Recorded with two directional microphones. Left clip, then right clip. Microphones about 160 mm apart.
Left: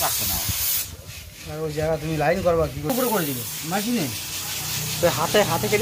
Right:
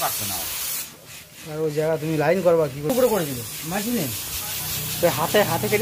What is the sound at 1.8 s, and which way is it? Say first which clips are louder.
Speech: left 1 dB; 65° right (ahead or behind).